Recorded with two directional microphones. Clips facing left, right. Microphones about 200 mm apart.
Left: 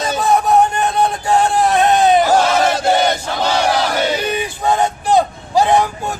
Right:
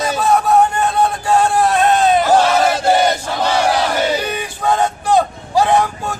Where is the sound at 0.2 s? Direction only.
15° left (ahead or behind).